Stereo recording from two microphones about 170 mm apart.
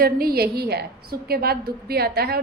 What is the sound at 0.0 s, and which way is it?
A woman's voice, 60° right (ahead or behind).